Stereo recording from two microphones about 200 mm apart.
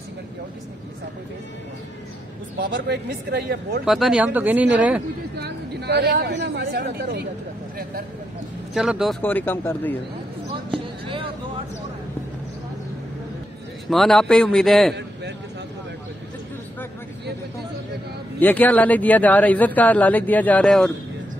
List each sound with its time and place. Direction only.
2.7 s speech: 60° right (ahead or behind)
3.8 s a man's voice: centre (ahead or behind)
5.4 s speech: 55° right (ahead or behind)
8.7 s a man's voice: centre (ahead or behind)
9.2 s a man's voice: 10° left (ahead or behind)
11.1 s a sound: 25° right (ahead or behind)
13.8 s a man's voice: centre (ahead or behind)
18.4 s a man's voice: 10° left (ahead or behind)